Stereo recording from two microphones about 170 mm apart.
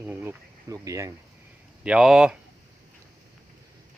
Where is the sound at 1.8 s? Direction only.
5° right (ahead or behind).